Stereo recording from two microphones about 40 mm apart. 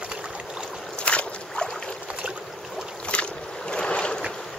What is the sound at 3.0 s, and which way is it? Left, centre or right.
Boat, left.